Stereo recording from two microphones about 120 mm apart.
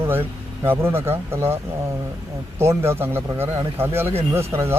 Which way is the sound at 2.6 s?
20° right (ahead or behind).